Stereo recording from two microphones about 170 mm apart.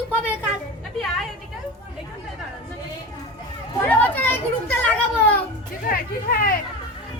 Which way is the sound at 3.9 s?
10° left (ahead or behind).